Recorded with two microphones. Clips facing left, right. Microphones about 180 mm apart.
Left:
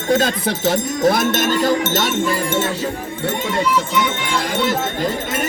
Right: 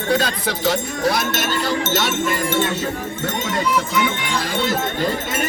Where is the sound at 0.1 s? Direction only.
45° left (ahead or behind).